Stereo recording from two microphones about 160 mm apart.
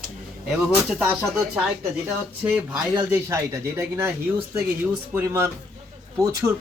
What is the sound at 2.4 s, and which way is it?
Speech, 15° right (ahead or behind).